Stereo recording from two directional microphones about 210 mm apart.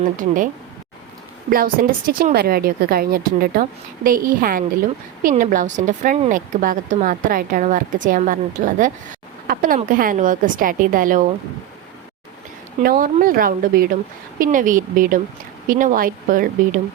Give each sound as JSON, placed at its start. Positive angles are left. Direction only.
{"t": 0.0, "sound": "a woman's voice", "side_deg": -40}
{"t": 1.5, "sound": "a woman's voice", "side_deg": -45}
{"t": 12.8, "sound": "a woman's voice", "side_deg": -40}